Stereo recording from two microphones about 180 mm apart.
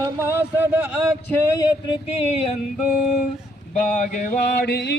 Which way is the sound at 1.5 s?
25° left (ahead or behind).